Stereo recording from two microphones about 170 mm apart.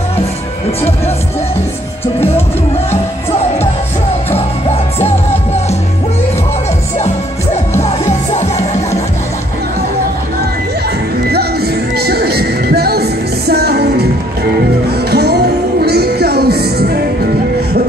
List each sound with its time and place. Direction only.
4.3 s music: 35° left (ahead or behind)
8.3 s music: 40° left (ahead or behind)
11.2 s music: 70° right (ahead or behind)
15.0 s music: 70° right (ahead or behind)